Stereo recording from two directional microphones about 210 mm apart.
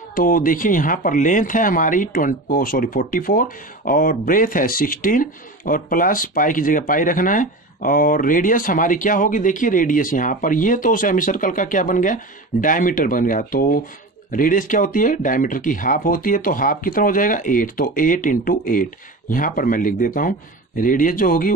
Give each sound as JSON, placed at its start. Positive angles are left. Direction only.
{"t": 0.1, "sound": "speech", "side_deg": 40}